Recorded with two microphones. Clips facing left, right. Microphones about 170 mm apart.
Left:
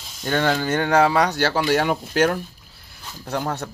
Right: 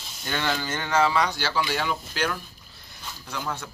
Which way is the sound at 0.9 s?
40° left (ahead or behind).